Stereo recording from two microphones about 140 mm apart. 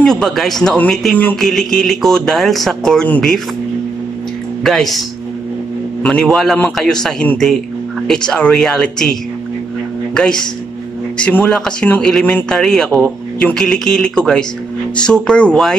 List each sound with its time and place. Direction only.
0.0 s speech: 5° left (ahead or behind)
4.6 s speech: centre (ahead or behind)
6.0 s speech: 5° left (ahead or behind)
10.1 s speech: 5° left (ahead or behind)